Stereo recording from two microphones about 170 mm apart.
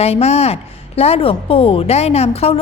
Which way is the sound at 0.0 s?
40° left (ahead or behind).